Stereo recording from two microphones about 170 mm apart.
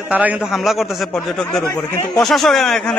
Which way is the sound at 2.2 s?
Centre (ahead or behind).